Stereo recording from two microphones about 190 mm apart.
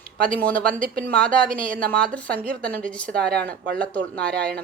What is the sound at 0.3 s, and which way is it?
A woman's voice, 5° left (ahead or behind).